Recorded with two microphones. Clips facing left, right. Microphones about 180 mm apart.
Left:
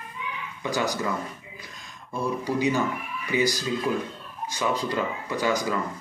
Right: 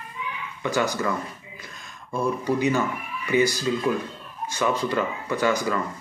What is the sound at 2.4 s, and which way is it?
Speech, 15° left (ahead or behind).